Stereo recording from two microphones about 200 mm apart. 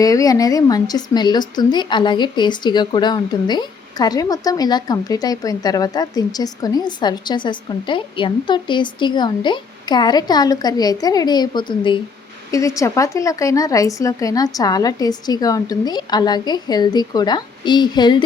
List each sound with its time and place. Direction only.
0.0 s a woman's voice: 15° left (ahead or behind)